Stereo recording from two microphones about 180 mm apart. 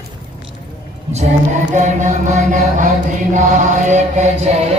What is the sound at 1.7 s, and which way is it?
Chant, 45° right (ahead or behind).